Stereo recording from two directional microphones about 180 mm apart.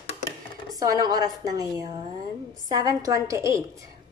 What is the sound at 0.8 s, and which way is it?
A woman's voice, 20° right (ahead or behind).